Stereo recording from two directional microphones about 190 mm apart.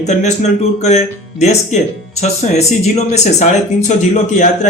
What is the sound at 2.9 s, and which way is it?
Speech, 35° left (ahead or behind).